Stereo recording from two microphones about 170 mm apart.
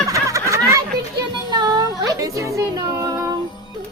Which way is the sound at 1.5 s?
25° right (ahead or behind).